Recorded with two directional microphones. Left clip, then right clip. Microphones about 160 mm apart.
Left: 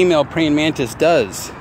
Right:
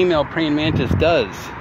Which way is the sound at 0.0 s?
40° left (ahead or behind).